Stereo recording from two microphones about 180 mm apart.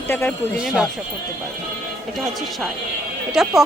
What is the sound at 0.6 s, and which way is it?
Speech, 5° right (ahead or behind).